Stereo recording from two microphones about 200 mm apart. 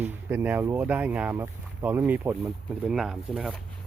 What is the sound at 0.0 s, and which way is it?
Speech, 10° right (ahead or behind).